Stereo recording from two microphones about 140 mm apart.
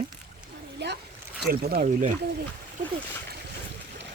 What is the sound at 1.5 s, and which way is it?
Speech, 90° right.